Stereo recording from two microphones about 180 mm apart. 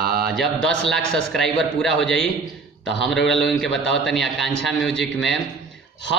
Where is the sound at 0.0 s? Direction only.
55° right (ahead or behind).